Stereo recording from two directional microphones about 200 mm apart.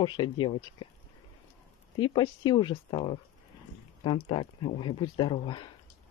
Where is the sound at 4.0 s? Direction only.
25° left (ahead or behind).